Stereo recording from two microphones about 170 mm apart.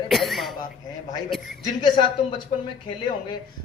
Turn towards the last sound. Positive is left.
turn(degrees=30)  # may be behind; listen again after turning